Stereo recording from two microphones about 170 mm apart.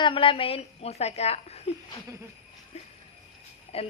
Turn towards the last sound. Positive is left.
turn(degrees=35)  # may be behind; listen again after turning